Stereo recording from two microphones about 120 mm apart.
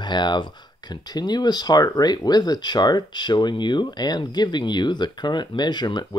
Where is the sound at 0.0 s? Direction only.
40° left (ahead or behind).